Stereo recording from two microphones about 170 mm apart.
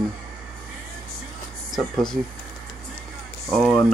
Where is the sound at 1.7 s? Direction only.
Centre (ahead or behind).